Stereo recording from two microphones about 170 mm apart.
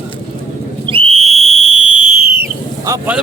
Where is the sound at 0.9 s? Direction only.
35° right (ahead or behind).